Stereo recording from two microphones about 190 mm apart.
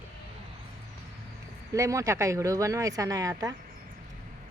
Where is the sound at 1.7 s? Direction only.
15° right (ahead or behind).